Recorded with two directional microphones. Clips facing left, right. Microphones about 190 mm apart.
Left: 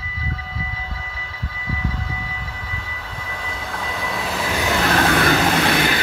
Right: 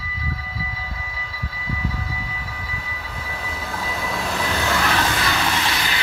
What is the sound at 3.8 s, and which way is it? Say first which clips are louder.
Vehicle: even; centre (ahead or behind).